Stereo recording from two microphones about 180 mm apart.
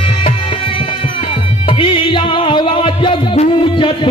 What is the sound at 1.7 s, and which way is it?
Music, 30° left (ahead or behind).